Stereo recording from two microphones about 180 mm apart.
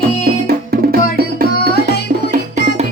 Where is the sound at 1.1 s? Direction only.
60° right (ahead or behind).